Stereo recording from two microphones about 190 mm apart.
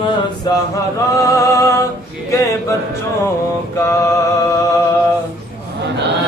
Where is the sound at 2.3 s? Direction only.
15° left (ahead or behind).